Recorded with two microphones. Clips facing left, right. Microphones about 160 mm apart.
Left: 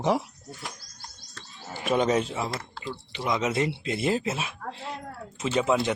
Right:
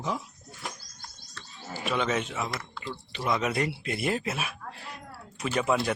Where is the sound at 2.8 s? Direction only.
20° left (ahead or behind).